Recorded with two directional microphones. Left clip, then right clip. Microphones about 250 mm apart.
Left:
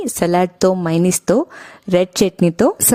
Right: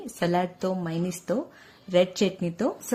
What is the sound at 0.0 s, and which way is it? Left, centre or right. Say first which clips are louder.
A woman's voice: left 10 dB; left.